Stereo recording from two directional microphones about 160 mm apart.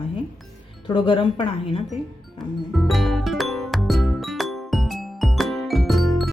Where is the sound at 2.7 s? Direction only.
Centre (ahead or behind).